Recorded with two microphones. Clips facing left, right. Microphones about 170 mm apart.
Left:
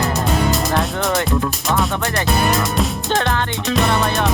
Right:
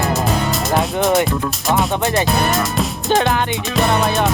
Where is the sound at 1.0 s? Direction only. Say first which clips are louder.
Right 5 dB; 20° right (ahead or behind).